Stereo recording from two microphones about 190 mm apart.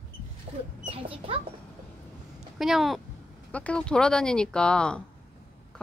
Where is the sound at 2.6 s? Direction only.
Centre (ahead or behind).